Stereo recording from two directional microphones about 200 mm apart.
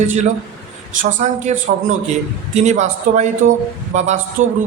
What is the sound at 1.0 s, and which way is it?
A man's voice, 35° right (ahead or behind).